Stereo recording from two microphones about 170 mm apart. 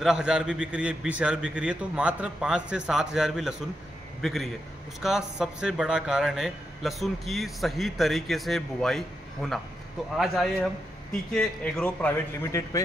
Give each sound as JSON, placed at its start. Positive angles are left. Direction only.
{"t": 0.0, "sound": "a man's voice", "side_deg": -5}
{"t": 12.4, "sound": "a man's voice", "side_deg": 20}